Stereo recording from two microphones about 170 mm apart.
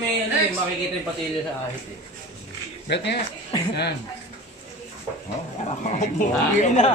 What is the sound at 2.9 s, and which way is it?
Speech, 90° left.